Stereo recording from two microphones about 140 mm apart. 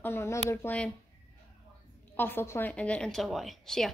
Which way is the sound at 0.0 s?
15° left (ahead or behind).